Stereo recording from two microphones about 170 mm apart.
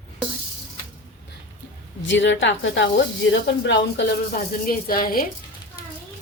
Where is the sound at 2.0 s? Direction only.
90° left; by 5.3 s 55° left (ahead or behind).